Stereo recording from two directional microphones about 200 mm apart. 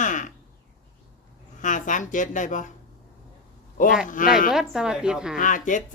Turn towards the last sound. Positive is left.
turn(degrees=40)  # may be behind; listen again after turning